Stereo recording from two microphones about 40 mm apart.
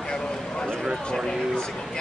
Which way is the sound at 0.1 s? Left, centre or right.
Left.